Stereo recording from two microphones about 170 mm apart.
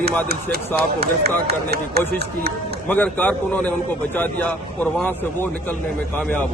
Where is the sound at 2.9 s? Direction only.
10° left (ahead or behind).